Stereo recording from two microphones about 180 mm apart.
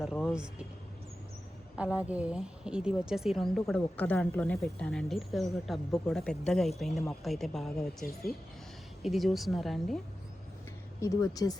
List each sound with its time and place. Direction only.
0.0 s speech: 5° left (ahead or behind)
1.7 s speech: 5° right (ahead or behind)
11.0 s speech: 20° left (ahead or behind)